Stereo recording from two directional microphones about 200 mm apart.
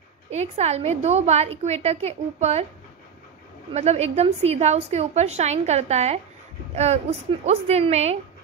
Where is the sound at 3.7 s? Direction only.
30° right (ahead or behind).